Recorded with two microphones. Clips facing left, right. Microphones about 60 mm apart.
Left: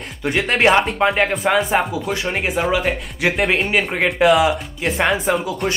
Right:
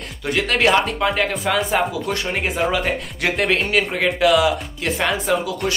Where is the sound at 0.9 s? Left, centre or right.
Left.